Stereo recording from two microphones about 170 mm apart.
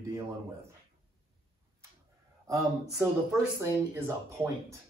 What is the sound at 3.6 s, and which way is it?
Speech, 15° right (ahead or behind).